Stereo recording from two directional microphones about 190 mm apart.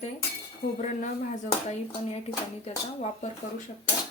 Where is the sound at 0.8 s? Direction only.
40° left (ahead or behind).